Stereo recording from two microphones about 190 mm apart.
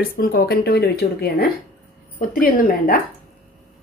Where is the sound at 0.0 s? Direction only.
50° left (ahead or behind).